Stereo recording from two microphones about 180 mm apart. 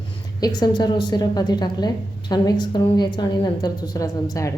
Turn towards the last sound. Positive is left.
turn(degrees=20)  # may be behind; listen again after turning